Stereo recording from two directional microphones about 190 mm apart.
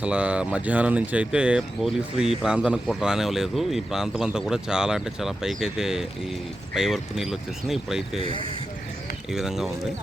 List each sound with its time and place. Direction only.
0.0 s speech: 5° right (ahead or behind)
8.2 s speech: 25° left (ahead or behind)
9.3 s speech: centre (ahead or behind)